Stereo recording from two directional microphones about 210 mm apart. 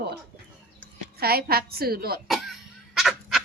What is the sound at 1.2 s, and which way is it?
A woman's voice, 45° right (ahead or behind).